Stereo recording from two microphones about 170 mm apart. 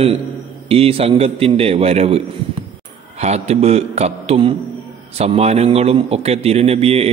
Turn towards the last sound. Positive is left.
turn(degrees=-35)  # may be behind; listen again after turning